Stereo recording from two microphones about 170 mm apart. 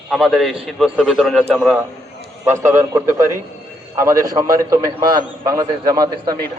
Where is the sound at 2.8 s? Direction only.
15° right (ahead or behind).